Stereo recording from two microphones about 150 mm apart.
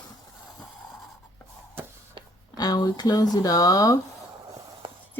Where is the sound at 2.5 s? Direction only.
25° left (ahead or behind).